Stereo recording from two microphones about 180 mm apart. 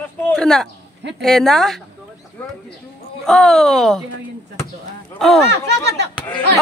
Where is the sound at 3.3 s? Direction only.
Centre (ahead or behind).